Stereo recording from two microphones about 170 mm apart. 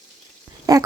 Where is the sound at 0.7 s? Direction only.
20° right (ahead or behind).